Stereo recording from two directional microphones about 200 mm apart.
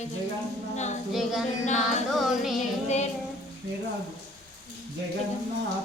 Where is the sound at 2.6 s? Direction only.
35° left (ahead or behind).